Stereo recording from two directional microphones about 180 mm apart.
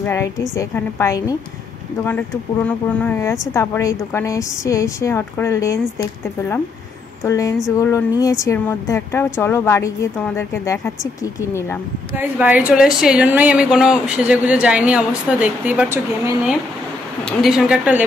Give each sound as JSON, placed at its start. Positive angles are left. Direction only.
{"t": 0.0, "sound": "speech", "side_deg": 15}
{"t": 7.2, "sound": "speech", "side_deg": 15}
{"t": 12.2, "sound": "a woman's voice", "side_deg": -10}
{"t": 17.3, "sound": "speech", "side_deg": 0}